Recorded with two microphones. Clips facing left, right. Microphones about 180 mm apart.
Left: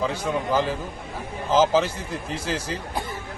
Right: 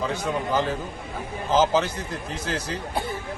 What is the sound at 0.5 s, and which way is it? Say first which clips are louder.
A man's voice: left 1 dB; 10° left (ahead or behind).